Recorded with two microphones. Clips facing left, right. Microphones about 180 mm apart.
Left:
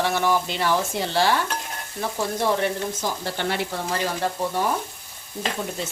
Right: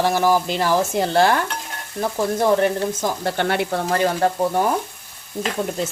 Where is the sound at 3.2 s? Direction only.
55° right (ahead or behind).